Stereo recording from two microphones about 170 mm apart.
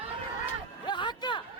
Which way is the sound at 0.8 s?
25° left (ahead or behind).